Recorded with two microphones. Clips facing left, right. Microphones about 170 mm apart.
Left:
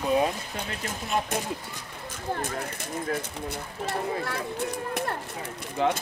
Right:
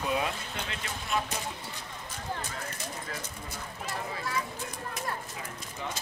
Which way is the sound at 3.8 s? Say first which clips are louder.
Left 7 dB; 65° left (ahead or behind).